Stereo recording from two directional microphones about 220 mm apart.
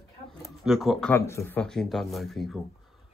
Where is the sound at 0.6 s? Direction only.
Centre (ahead or behind).